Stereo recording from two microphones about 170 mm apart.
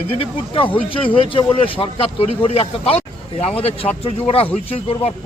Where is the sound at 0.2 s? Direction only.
30° left (ahead or behind).